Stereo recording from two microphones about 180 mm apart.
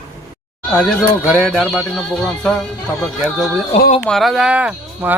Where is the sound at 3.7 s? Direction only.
35° left (ahead or behind).